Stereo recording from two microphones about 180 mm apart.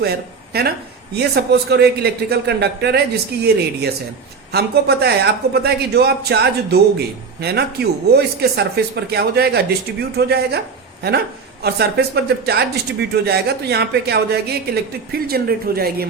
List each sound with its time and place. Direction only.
0.5 s speech: 60° right (ahead or behind)
11.6 s speech: 65° right (ahead or behind)